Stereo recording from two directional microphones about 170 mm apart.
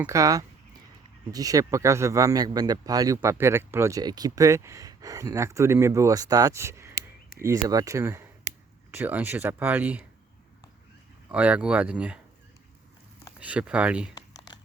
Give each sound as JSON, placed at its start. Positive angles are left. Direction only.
{"t": 0.0, "sound": "speech", "side_deg": -20}
{"t": 11.3, "sound": "speech", "side_deg": -5}
{"t": 13.4, "sound": "speech", "side_deg": -5}
{"t": 14.2, "sound": "computer keyboard", "side_deg": 25}